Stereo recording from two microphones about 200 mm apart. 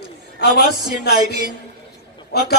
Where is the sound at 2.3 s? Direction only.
55° left (ahead or behind).